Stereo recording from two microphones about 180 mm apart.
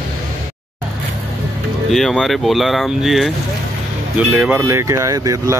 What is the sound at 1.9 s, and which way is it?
Speech, centre (ahead or behind).